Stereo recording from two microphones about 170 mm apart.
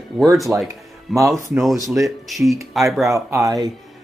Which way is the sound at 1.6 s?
Centre (ahead or behind).